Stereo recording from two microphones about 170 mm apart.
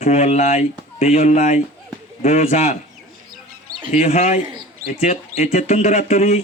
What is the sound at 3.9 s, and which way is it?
A man's voice, 40° left (ahead or behind).